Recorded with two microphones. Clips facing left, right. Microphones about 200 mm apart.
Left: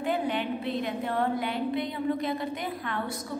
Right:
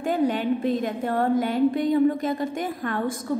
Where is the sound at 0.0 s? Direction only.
45° right (ahead or behind).